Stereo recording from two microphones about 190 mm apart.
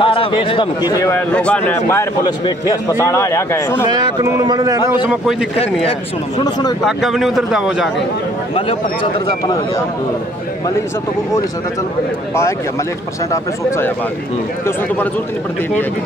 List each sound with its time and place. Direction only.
0.0 s a man's voice: 25° left (ahead or behind)
1.1 s a man's voice: 5° left (ahead or behind)
3.8 s speech: 20° right (ahead or behind)
4.8 s a man's voice: 10° right (ahead or behind)
5.6 s speech: 30° left (ahead or behind)
6.9 s a man's voice: centre (ahead or behind)
13.3 s a man's voice: 15° left (ahead or behind)